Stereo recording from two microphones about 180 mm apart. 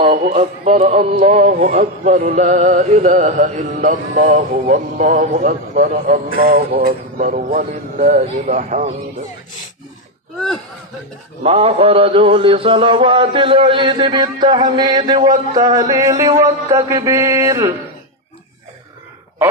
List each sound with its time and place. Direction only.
0.0 s speech: 40° right (ahead or behind)
11.4 s mantra: 35° right (ahead or behind)
15.5 s a sound: 20° right (ahead or behind)